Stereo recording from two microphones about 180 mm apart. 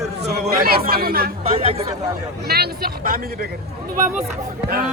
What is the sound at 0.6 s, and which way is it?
Speech, 55° right (ahead or behind).